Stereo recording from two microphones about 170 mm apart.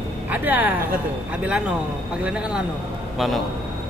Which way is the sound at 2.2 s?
5° right (ahead or behind).